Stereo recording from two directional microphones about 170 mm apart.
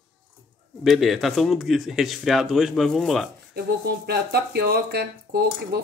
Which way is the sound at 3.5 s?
70° right (ahead or behind).